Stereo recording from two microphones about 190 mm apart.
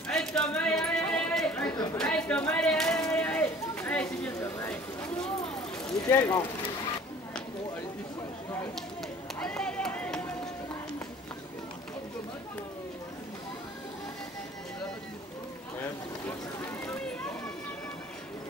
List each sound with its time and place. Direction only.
0.1 s a sound: 5° left (ahead or behind)
6.0 s speech: 20° left (ahead or behind)
9.4 s run: 5° left (ahead or behind)